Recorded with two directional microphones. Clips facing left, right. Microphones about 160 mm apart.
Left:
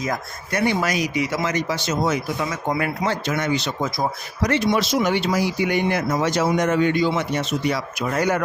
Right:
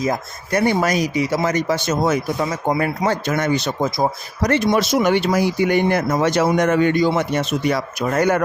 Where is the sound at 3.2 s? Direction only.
45° right (ahead or behind).